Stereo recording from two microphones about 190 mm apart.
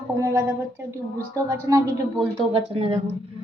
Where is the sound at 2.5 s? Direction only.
30° right (ahead or behind).